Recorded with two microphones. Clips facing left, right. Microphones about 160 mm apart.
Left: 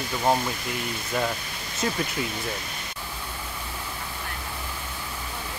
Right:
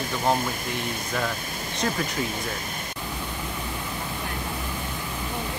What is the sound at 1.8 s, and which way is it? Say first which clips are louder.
Speech: even; 5° left (ahead or behind).